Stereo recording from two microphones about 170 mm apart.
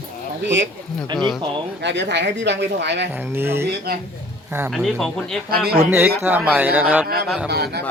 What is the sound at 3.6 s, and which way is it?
Speech, 65° right (ahead or behind).